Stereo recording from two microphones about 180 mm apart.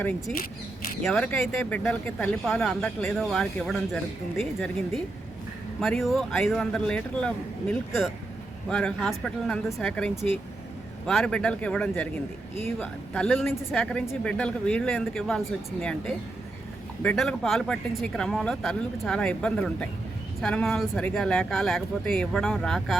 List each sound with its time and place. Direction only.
1.0 s speech: 5° left (ahead or behind)
5.8 s speech: centre (ahead or behind)